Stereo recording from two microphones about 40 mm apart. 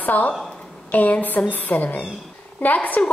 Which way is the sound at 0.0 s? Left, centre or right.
Left.